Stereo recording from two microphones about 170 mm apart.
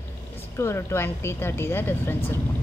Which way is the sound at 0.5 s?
15° left (ahead or behind).